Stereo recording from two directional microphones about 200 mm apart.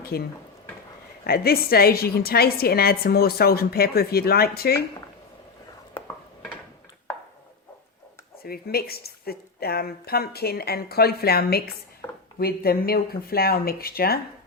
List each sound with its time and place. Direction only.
0.1 s a woman's voice: 50° left (ahead or behind)
8.4 s a woman's voice: 50° left (ahead or behind)
12.0 s a sound: 10° left (ahead or behind)
12.4 s a woman's voice: 50° left (ahead or behind)